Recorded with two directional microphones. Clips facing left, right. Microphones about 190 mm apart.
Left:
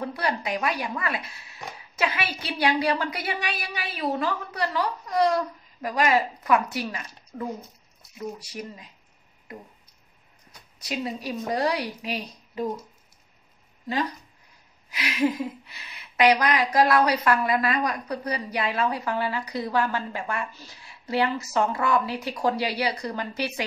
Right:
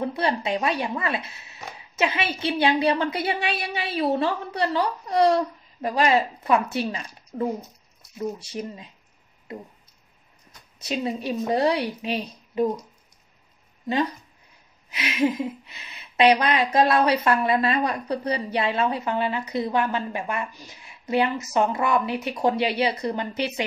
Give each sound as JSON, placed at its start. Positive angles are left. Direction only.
{"t": 0.0, "sound": "a woman's voice", "side_deg": -25}
{"t": 10.8, "sound": "a woman's voice", "side_deg": -25}
{"t": 14.9, "sound": "a woman's voice", "side_deg": -25}